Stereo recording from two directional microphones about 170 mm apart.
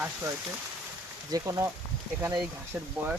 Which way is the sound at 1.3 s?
20° right (ahead or behind).